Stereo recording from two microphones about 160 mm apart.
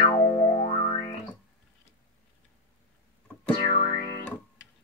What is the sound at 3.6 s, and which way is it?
Music, 70° left (ahead or behind).